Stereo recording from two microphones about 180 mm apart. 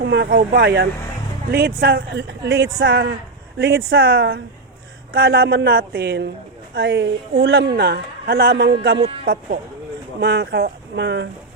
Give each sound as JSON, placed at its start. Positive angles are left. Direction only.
{"t": 0.0, "sound": "speech", "side_deg": -75}
{"t": 0.3, "sound": "a woman's voice", "side_deg": -60}
{"t": 9.2, "sound": "speech", "side_deg": -55}
{"t": 10.2, "sound": "speech", "side_deg": -75}